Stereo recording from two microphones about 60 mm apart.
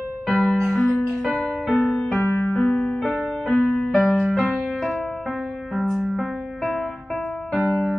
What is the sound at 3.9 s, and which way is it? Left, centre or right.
Music, centre.